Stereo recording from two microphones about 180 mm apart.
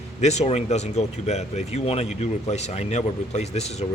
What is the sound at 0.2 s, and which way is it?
A man's voice, 40° left (ahead or behind).